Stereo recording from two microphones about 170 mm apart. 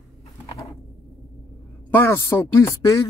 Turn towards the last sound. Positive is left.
turn(degrees=20)  # may be behind; listen again after turning